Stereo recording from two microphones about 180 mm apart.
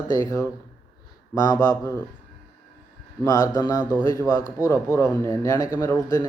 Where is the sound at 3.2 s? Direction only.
20° left (ahead or behind).